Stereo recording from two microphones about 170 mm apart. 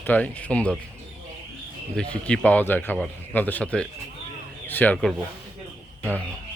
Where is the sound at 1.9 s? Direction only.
5° left (ahead or behind).